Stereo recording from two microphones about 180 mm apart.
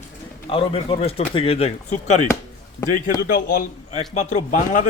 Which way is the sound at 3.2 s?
55° left (ahead or behind).